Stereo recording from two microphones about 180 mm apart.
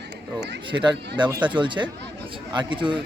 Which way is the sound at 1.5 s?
25° right (ahead or behind).